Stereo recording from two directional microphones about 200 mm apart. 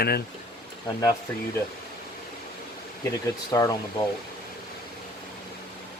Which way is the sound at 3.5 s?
20° left (ahead or behind).